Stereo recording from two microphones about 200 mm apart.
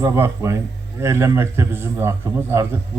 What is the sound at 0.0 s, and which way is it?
A man's voice, 15° right (ahead or behind).